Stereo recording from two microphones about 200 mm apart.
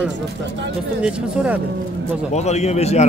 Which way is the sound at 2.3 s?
35° left (ahead or behind).